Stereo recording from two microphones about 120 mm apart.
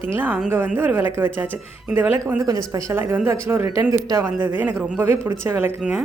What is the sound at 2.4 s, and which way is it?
A woman's voice, 30° right (ahead or behind).